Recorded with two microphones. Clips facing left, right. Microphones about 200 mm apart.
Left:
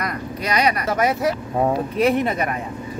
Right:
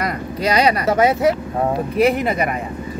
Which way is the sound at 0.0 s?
30° right (ahead or behind).